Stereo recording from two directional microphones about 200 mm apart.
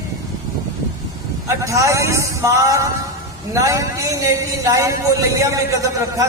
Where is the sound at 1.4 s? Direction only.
15° right (ahead or behind).